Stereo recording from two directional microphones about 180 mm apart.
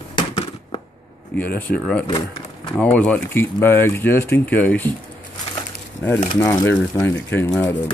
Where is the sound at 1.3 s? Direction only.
5° left (ahead or behind).